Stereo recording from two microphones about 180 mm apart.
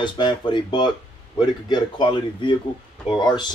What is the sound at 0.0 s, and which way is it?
Speech, 25° left (ahead or behind).